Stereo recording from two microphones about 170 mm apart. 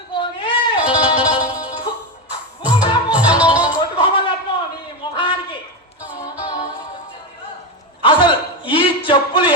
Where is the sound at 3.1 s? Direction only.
5° right (ahead or behind).